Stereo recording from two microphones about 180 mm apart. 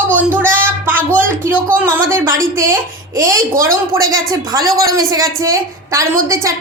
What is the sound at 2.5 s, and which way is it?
A woman's voice, 15° right (ahead or behind).